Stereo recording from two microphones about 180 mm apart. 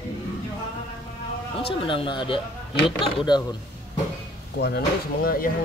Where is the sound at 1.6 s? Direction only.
30° left (ahead or behind).